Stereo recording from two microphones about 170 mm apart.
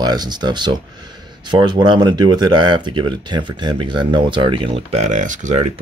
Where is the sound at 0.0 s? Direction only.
25° right (ahead or behind).